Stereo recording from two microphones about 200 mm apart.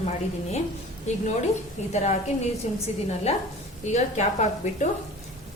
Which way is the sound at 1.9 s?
35° left (ahead or behind).